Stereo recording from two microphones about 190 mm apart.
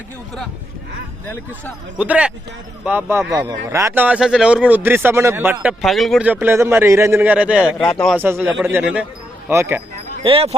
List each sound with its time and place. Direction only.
2.0 s a man's voice: 5° right (ahead or behind)
5.8 s a man's voice: centre (ahead or behind)
7.9 s speech: 5° left (ahead or behind)
8.2 s a man's voice: 10° right (ahead or behind)
10.2 s speech: 30° right (ahead or behind)